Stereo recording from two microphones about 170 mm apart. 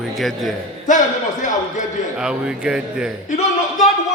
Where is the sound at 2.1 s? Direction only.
5° right (ahead or behind).